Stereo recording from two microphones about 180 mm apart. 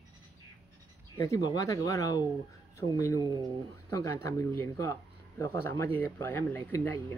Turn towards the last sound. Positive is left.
turn(degrees=15)  # may be behind; listen again after turning